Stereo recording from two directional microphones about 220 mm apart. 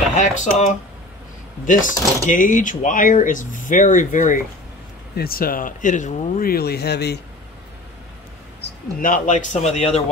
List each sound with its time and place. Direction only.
0.1 s speech: 35° left (ahead or behind)
8.5 s speech: 40° left (ahead or behind)